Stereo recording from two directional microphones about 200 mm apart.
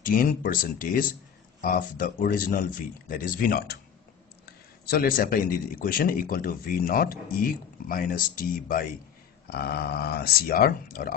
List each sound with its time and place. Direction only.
0.0 s speech: 45° left (ahead or behind)